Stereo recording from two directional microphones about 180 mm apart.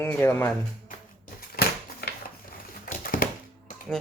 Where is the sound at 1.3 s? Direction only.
55° left (ahead or behind).